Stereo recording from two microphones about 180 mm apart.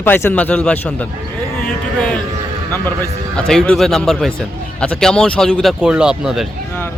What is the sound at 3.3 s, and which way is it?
A man's voice, 5° left (ahead or behind).